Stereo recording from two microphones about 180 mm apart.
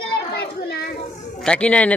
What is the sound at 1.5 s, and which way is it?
Speech, 5° left (ahead or behind).